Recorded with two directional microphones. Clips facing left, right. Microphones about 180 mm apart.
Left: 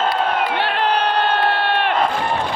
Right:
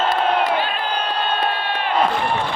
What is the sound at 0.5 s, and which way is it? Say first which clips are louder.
Crowd: left 3 dB; 70° left (ahead or behind).